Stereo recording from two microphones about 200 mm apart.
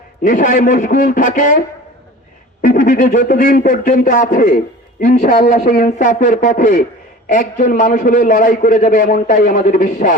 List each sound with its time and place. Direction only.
0.2 s speech: 40° left (ahead or behind)